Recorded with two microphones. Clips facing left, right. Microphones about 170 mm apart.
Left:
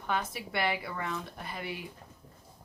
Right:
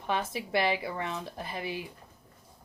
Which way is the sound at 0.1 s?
25° right (ahead or behind).